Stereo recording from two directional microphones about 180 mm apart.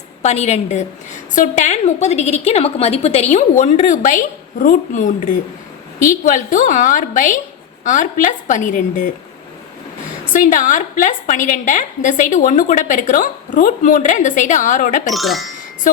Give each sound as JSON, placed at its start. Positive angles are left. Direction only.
{"t": 0.2, "sound": "a woman's voice", "side_deg": 40}
{"t": 10.3, "sound": "a woman's voice", "side_deg": 45}
{"t": 15.1, "sound": "speech", "side_deg": 0}